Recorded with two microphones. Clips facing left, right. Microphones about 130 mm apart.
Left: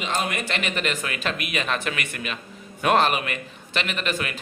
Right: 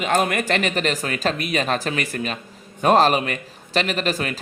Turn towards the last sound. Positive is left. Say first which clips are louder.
# right 4 dB
turn(degrees=-35)  # may be behind; listen again after turning